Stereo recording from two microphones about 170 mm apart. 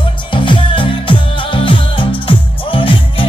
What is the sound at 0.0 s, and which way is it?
Music, 30° left (ahead or behind).